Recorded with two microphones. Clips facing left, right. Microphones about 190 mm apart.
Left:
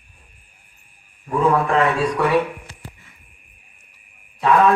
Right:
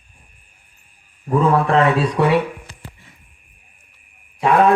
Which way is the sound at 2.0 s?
25° right (ahead or behind).